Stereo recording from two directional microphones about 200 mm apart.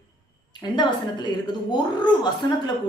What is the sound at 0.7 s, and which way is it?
Speech, 20° left (ahead or behind).